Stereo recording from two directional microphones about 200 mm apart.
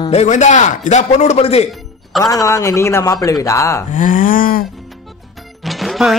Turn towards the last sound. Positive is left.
turn(degrees=0)  # may be behind; listen again after turning